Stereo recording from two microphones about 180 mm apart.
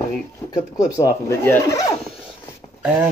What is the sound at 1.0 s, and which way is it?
Speech, 15° left (ahead or behind).